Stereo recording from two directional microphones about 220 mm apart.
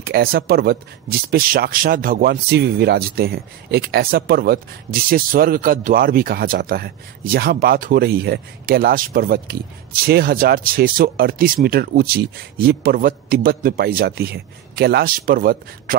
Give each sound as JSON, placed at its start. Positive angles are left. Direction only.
{"t": 0.0, "sound": "speech", "side_deg": -45}